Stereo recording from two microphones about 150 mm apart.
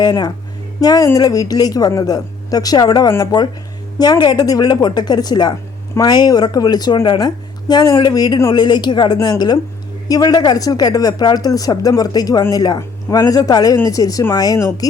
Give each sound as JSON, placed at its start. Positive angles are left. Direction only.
{"t": 0.0, "sound": "speech", "side_deg": 30}